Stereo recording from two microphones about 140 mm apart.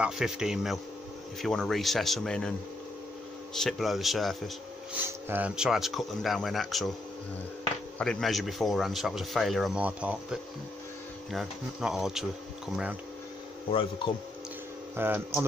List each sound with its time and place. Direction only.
0.0 s speech: 5° right (ahead or behind)
3.5 s speech: centre (ahead or behind)
4.9 s speech: 15° right (ahead or behind)
8.0 s speech: 5° left (ahead or behind)
13.7 s speech: 40° left (ahead or behind)
15.0 s speech: 15° right (ahead or behind)